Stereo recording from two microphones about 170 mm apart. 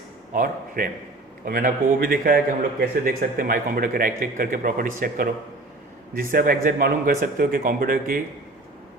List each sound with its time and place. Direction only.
0.3 s a man's voice: 55° right (ahead or behind)